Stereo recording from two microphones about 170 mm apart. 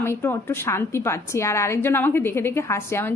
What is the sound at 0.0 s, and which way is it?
A woman's voice, 15° left (ahead or behind).